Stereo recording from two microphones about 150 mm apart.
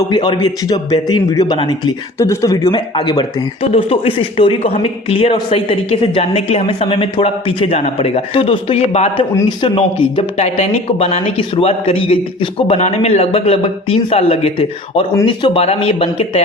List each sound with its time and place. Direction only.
0.1 s speech: 30° left (ahead or behind)
10.3 s speech: 45° left (ahead or behind)